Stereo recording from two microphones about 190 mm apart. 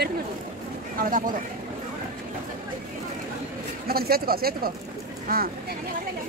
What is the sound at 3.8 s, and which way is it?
Speech, 55° right (ahead or behind).